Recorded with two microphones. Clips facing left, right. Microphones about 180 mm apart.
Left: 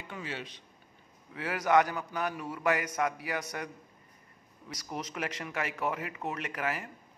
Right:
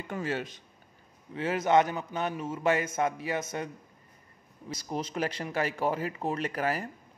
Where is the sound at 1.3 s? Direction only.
25° right (ahead or behind).